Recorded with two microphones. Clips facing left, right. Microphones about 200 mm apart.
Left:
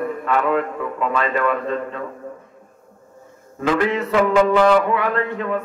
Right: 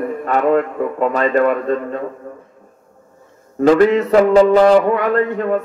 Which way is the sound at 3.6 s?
40° right (ahead or behind).